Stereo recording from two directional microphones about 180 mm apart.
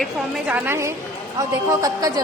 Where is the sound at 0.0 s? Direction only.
Centre (ahead or behind).